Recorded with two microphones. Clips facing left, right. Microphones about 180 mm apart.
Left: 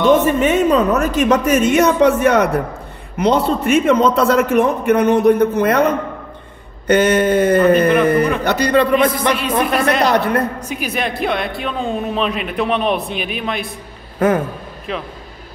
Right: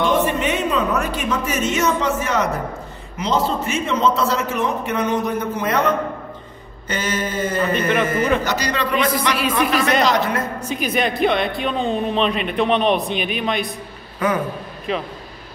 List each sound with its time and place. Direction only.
0.0 s a man's voice: 45° left (ahead or behind)
1.3 s a man's voice: 60° left (ahead or behind)
6.9 s a man's voice: 60° left (ahead or behind)
10.7 s speech: 5° left (ahead or behind)
14.2 s speech: 45° left (ahead or behind)
14.9 s speech: centre (ahead or behind)